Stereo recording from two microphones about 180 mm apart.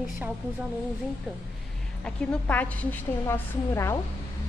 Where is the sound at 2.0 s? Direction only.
5° left (ahead or behind).